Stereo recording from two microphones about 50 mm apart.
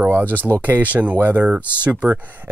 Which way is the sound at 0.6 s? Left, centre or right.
Right.